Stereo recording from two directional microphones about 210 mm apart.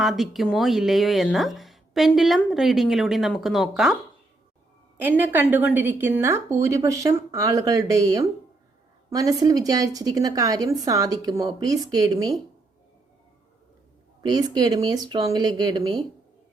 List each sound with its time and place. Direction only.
0.0 s speech: centre (ahead or behind)
4.9 s a woman's voice: 10° right (ahead or behind)
14.2 s speech: 20° right (ahead or behind)